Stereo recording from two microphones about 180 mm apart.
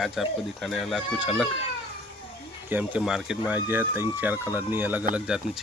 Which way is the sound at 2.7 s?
10° right (ahead or behind).